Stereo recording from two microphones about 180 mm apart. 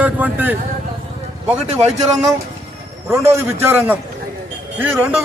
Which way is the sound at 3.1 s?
15° right (ahead or behind).